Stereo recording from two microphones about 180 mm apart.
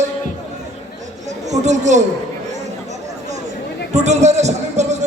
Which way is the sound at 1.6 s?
40° right (ahead or behind).